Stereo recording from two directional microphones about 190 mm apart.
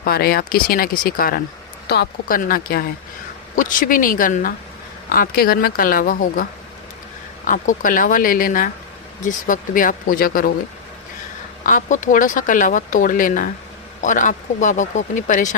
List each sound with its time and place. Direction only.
0.0 s speech: 50° left (ahead or behind)
7.4 s speech: 45° left (ahead or behind)
11.6 s speech: 40° left (ahead or behind)